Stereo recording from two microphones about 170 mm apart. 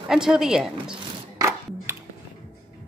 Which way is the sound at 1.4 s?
15° right (ahead or behind).